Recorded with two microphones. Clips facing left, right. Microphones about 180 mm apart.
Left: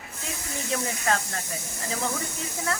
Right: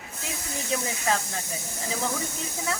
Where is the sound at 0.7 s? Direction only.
Centre (ahead or behind).